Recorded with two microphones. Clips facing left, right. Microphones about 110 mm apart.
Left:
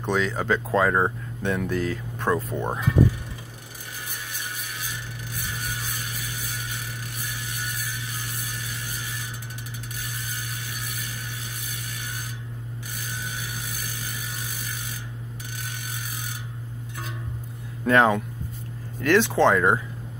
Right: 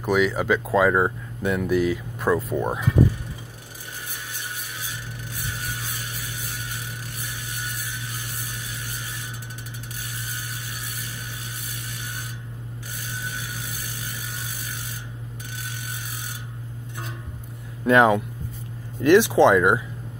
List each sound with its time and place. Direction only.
0.0 s speech: 10° right (ahead or behind)
17.8 s speech: 15° right (ahead or behind)